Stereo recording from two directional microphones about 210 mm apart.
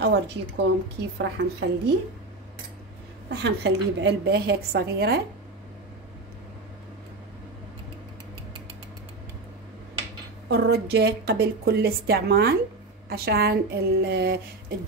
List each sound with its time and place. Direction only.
0.0 s a woman's voice: 55° right (ahead or behind)
3.3 s a woman's voice: 55° right (ahead or behind)
10.5 s a woman's voice: 55° right (ahead or behind)